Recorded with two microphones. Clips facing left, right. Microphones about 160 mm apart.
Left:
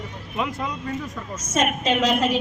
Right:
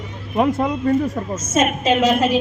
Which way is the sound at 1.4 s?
5° right (ahead or behind).